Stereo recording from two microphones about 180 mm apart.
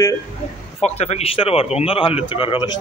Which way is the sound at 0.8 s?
35° left (ahead or behind).